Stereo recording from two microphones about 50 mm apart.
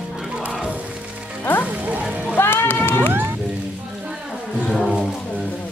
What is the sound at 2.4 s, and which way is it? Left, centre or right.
Run, left.